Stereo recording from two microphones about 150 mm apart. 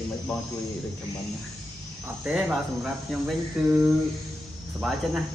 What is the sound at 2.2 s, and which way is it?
Speech, 10° right (ahead or behind).